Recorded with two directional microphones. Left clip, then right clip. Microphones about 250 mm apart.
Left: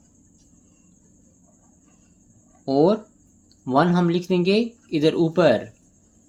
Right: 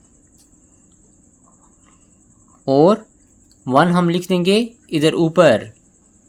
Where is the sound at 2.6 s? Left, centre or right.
Right.